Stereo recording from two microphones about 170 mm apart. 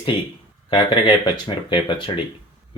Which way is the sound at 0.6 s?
30° left (ahead or behind).